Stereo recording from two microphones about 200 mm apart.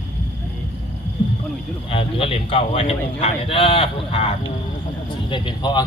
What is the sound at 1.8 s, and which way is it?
A man's voice, 30° left (ahead or behind).